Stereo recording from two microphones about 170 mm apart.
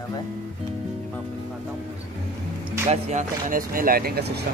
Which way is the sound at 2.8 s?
40° right (ahead or behind).